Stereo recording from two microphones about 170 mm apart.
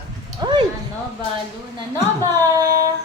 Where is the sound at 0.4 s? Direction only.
25° right (ahead or behind).